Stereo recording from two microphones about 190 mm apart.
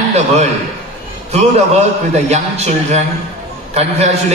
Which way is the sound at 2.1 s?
35° right (ahead or behind).